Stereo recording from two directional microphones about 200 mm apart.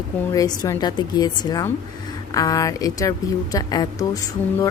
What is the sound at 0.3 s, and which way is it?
A woman's voice, 20° left (ahead or behind).